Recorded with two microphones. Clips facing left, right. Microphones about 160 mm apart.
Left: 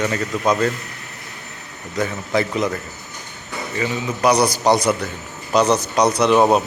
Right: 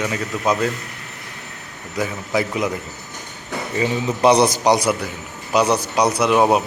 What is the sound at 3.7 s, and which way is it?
A man's voice, 25° right (ahead or behind).